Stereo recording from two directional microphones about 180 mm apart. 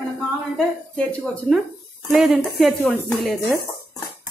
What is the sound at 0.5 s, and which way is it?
A woman's voice, 10° left (ahead or behind).